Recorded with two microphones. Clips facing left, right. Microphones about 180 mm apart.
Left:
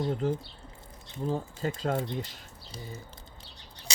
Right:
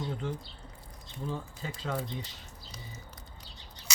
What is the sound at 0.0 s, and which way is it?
Speech, 40° left (ahead or behind).